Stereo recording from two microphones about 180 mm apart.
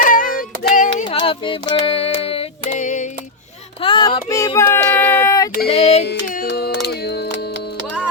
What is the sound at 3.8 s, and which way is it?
Child singing, 25° left (ahead or behind).